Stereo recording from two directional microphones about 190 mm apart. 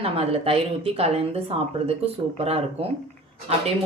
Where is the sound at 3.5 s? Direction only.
35° right (ahead or behind).